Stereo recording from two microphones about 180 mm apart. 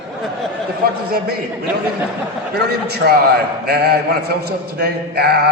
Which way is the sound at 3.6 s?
60° right (ahead or behind).